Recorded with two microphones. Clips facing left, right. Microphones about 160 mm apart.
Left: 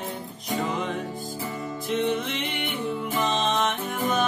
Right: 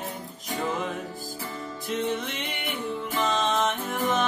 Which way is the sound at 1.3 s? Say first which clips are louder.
Left 4 dB; 20° left (ahead or behind).